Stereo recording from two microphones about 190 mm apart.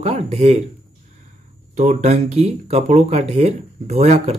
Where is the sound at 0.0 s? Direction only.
35° right (ahead or behind).